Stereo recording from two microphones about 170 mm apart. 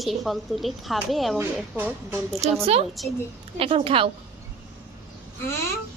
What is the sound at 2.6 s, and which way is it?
A woman's voice, 35° right (ahead or behind).